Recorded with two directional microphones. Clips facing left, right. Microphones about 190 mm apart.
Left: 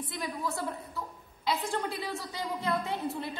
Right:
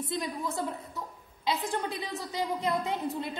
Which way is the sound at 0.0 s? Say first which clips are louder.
Right 2 dB; 20° right (ahead or behind).